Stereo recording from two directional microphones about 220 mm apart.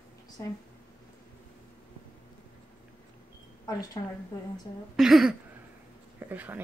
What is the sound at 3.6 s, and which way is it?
Speech, 15° left (ahead or behind).